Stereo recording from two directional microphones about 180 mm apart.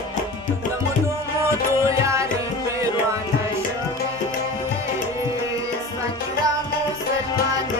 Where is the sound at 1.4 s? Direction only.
15° right (ahead or behind).